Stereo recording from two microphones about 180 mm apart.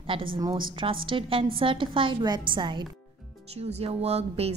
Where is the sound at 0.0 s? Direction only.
30° right (ahead or behind).